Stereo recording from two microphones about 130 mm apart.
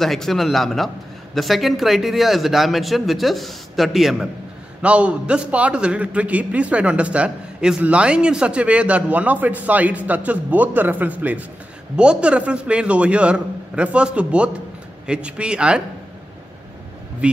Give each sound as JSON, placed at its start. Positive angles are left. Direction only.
{"t": 0.0, "sound": "a man's voice", "side_deg": 0}
{"t": 17.2, "sound": "a man's voice", "side_deg": -10}